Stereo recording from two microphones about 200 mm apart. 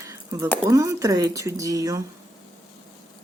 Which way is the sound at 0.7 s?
15° right (ahead or behind).